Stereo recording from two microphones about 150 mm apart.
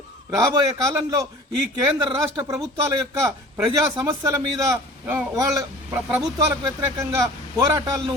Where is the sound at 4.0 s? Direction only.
25° right (ahead or behind).